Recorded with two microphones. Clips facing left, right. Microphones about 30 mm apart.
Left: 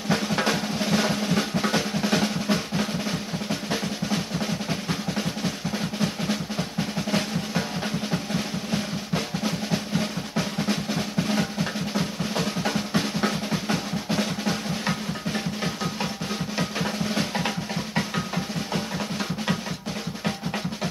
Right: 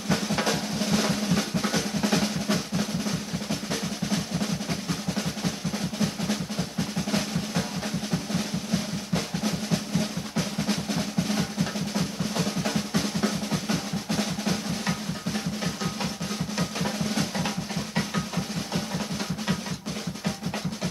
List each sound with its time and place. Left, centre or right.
0.1 s drum: centre
7.1 s drum: centre
8.7 s drum: centre
17.9 s music: centre